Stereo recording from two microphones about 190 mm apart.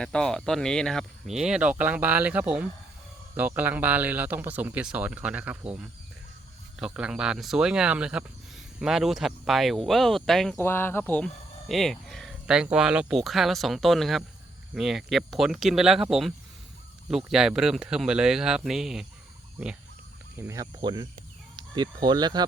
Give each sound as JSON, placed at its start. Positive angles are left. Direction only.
{"t": 0.0, "sound": "speech", "side_deg": 5}
{"t": 6.7, "sound": "speech", "side_deg": -5}
{"t": 10.6, "sound": "speech", "side_deg": 10}
{"t": 20.5, "sound": "speech", "side_deg": -20}